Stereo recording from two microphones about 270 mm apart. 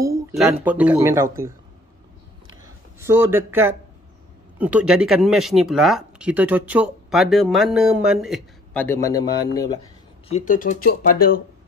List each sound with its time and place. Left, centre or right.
0.4 s speech: centre
3.0 s speech: centre
10.2 s speech: left